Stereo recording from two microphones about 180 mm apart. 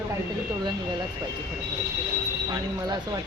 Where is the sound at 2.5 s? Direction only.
25° right (ahead or behind).